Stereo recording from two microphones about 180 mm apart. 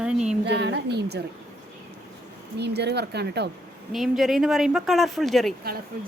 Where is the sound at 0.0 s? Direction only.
5° right (ahead or behind).